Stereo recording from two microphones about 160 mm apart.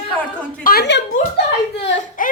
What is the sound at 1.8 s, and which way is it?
Speech, 55° left (ahead or behind).